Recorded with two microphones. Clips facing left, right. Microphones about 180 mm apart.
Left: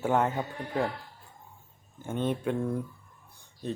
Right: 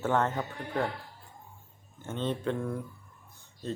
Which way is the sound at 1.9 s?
10° left (ahead or behind).